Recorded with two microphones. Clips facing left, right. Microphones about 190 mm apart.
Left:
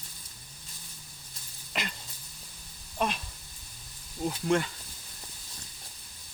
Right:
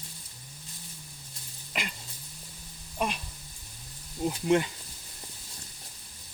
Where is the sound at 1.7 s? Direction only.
5° right (ahead or behind).